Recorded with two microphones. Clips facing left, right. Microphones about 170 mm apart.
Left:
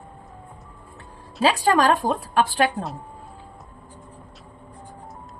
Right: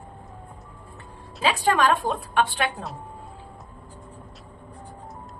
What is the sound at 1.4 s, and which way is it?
A woman's voice, 40° left (ahead or behind).